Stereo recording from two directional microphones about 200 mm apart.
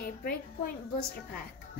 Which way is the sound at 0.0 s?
50° left (ahead or behind).